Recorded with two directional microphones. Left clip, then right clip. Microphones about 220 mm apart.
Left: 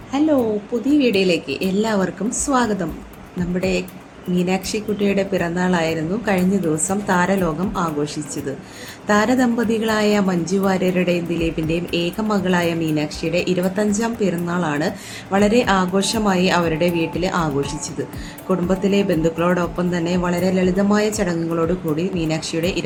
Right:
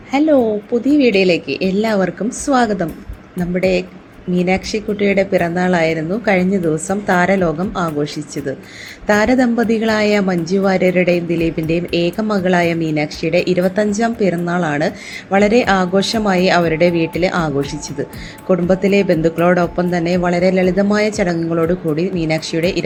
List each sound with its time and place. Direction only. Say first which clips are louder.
0.1 s a woman's voice: right 5 dB; 20° right (ahead or behind)